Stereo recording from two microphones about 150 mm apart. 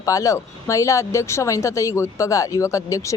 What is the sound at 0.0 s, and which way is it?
A woman's voice, 20° left (ahead or behind).